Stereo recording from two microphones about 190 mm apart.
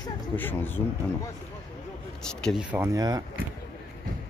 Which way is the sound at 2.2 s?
5° left (ahead or behind).